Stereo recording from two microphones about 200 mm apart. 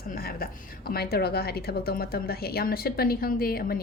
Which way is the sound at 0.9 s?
50° left (ahead or behind).